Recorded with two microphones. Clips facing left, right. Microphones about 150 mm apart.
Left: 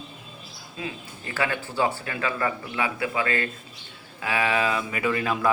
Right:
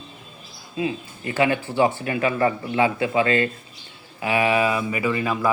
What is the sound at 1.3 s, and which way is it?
Speech, 20° right (ahead or behind).